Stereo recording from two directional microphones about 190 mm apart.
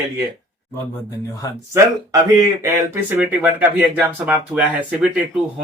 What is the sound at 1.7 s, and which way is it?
Speech, 15° right (ahead or behind).